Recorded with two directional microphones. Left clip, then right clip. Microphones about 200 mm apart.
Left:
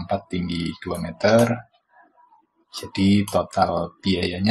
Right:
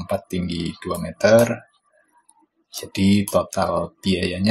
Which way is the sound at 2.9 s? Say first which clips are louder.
Right 1 dB; 30° right (ahead or behind).